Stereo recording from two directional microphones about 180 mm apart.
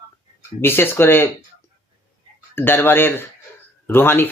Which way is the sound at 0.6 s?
15° left (ahead or behind).